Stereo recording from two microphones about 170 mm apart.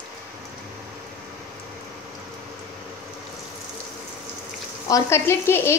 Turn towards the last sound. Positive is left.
turn(degrees=15)  # may be behind; listen again after turning